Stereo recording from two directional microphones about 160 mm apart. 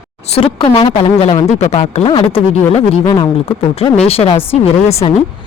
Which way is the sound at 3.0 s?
30° left (ahead or behind).